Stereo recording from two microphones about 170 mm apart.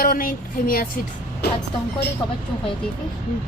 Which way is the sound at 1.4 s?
70° left (ahead or behind).